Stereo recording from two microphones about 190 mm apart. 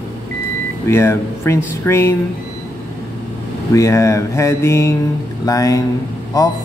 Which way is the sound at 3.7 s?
15° left (ahead or behind).